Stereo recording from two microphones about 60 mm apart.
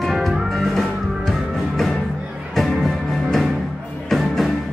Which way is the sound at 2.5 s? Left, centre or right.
Centre.